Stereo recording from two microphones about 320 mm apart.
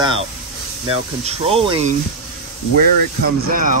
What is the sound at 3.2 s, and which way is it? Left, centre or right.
Speech, right.